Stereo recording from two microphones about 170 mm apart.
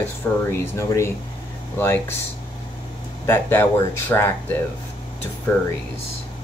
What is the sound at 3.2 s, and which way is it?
Speech, 15° left (ahead or behind).